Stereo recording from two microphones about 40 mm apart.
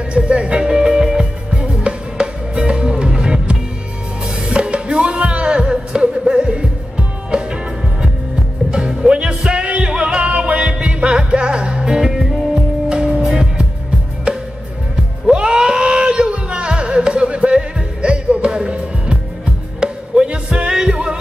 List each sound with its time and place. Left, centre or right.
0.1 s music: right
1.5 s music: right
9.6 s music: right
12.1 s music: centre
14.3 s music: right